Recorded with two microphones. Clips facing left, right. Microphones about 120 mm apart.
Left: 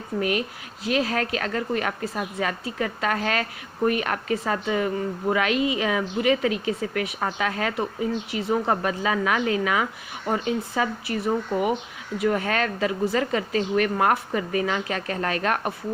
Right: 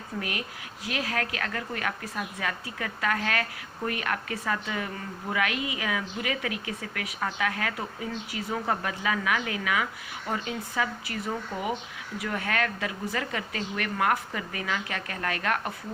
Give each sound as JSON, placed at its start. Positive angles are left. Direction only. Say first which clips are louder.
{"t": 0.2, "sound": "speech", "louder": "left 10 dB", "side_deg": 20}